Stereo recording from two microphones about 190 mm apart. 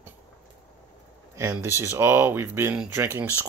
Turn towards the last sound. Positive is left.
turn(degrees=-10)  # may be behind; listen again after turning